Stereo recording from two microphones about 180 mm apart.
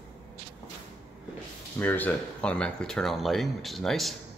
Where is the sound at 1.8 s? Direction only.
10° left (ahead or behind).